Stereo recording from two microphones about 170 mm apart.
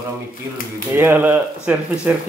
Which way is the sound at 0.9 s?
10° right (ahead or behind).